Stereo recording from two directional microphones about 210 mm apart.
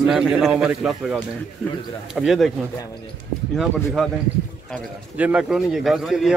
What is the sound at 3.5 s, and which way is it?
Speech, centre (ahead or behind).